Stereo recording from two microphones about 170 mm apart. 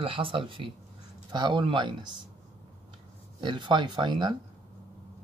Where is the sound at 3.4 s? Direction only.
25° right (ahead or behind).